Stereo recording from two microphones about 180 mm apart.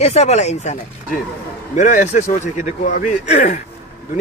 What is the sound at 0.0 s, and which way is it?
A man's voice, 35° left (ahead or behind).